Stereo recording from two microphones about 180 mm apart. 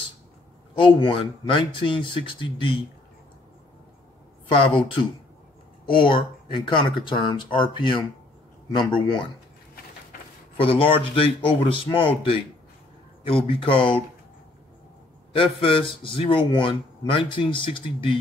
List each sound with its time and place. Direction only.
0.7 s a man's voice: 30° left (ahead or behind)
4.5 s a man's voice: 30° left (ahead or behind)
10.6 s a man's voice: 30° left (ahead or behind)
15.3 s a man's voice: 30° left (ahead or behind)